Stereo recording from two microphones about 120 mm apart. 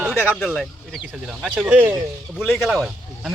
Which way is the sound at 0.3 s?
Centre (ahead or behind).